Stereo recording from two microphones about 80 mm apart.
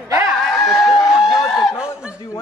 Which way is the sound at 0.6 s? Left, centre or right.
Centre.